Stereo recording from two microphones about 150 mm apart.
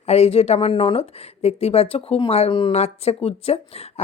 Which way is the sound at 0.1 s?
45° left (ahead or behind).